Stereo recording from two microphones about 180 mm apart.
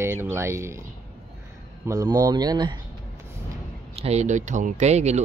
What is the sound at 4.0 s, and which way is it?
Speech, 40° right (ahead or behind).